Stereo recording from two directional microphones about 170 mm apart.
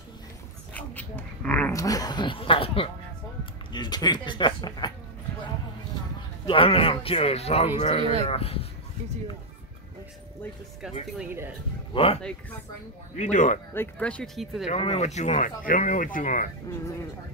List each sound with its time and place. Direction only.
0.7 s a sound: 10° left (ahead or behind); by 2.9 s 30° left (ahead or behind)
3.7 s speech: 25° left (ahead or behind)
6.4 s speech: 30° left (ahead or behind)
11.9 s speech: 35° left (ahead or behind)
12.2 s speech: 5° left (ahead or behind)
13.1 s speech: 45° left (ahead or behind)
13.7 s speech: 5° left (ahead or behind)
14.7 s speech: 35° left (ahead or behind); by 16.4 s 50° left (ahead or behind)